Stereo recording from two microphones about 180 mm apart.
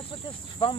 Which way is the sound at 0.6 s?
30° left (ahead or behind).